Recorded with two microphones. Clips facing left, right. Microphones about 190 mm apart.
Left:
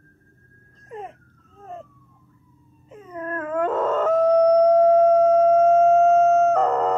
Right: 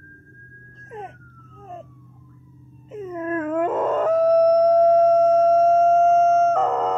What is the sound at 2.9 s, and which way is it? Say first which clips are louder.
Dog: right 5 dB; 25° right (ahead or behind).